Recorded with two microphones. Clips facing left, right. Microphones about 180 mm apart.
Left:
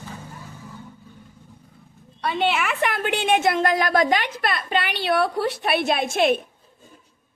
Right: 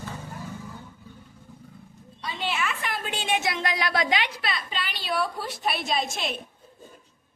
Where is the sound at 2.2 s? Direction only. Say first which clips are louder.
Left 7 dB; 65° left (ahead or behind).